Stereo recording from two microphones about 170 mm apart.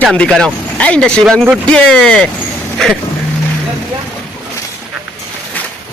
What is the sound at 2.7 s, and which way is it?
Vehicle, centre (ahead or behind).